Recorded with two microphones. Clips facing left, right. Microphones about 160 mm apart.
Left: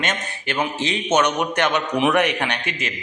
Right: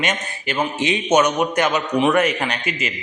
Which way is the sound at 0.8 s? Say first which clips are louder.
Right 5 dB; 20° right (ahead or behind).